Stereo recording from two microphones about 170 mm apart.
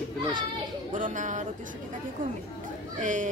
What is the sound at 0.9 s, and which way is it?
Speech, 50° right (ahead or behind).